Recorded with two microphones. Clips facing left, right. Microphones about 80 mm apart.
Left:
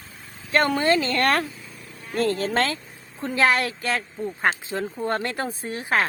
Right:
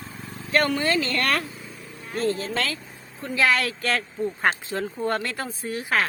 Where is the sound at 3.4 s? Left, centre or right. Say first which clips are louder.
Left 1 dB; left.